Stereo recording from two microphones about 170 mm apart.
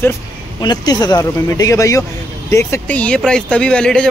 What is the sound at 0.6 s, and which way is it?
Speech, 25° left (ahead or behind).